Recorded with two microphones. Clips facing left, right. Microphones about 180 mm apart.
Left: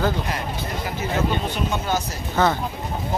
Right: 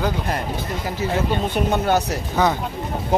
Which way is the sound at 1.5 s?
60° right (ahead or behind).